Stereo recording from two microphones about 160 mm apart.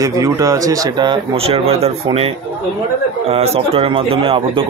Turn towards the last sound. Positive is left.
turn(degrees=-35)  # may be behind; listen again after turning